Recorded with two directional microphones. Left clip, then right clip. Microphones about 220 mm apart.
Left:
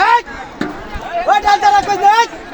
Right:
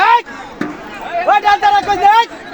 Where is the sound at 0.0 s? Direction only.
30° right (ahead or behind).